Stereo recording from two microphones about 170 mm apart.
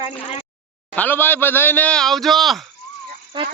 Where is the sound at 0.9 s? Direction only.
10° left (ahead or behind).